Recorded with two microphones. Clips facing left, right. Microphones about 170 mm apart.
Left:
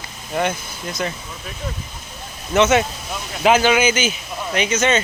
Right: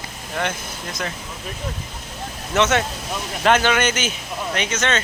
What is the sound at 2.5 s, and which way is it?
Speech, 5° left (ahead or behind).